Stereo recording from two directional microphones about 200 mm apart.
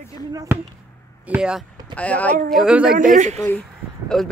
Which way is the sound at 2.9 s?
40° right (ahead or behind).